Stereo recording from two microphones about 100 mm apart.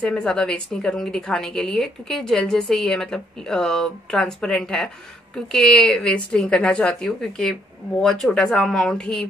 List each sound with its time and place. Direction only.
0.0 s a woman's voice: 10° left (ahead or behind)